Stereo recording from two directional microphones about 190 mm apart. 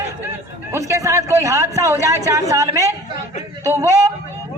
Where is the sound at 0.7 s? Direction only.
15° right (ahead or behind).